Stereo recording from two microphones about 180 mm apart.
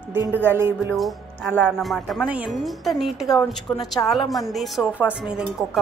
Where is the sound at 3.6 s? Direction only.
25° left (ahead or behind).